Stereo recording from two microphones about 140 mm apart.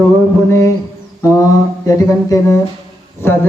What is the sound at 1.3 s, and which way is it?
A man's voice, 25° left (ahead or behind).